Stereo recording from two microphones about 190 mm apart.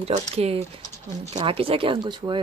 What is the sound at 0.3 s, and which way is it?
Speech, 35° right (ahead or behind).